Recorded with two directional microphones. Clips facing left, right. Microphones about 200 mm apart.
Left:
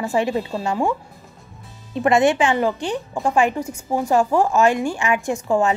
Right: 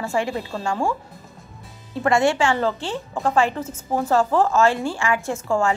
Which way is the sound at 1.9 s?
20° left (ahead or behind).